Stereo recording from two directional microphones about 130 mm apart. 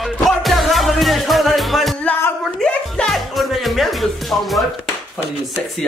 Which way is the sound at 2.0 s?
15° left (ahead or behind).